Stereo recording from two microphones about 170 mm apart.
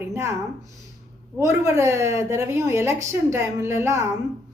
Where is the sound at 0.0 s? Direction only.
15° right (ahead or behind).